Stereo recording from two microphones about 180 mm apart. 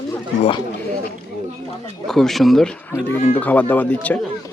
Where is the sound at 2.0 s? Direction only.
Centre (ahead or behind).